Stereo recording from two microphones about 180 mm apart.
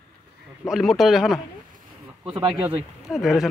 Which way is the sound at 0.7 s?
Centre (ahead or behind).